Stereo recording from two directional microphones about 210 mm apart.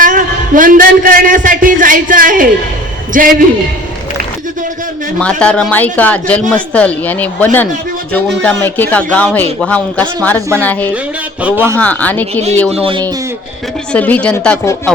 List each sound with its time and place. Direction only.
0.0 s a man's voice: 40° right (ahead or behind)
5.2 s a man's voice: 5° left (ahead or behind)
11.4 s a man's voice: 10° right (ahead or behind)
11.8 s a man's voice: 5° left (ahead or behind)
12.7 s speech: 25° right (ahead or behind)
13.9 s a man's voice: 5° left (ahead or behind)